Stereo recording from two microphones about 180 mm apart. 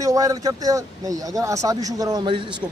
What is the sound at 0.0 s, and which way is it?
Speech, 20° right (ahead or behind).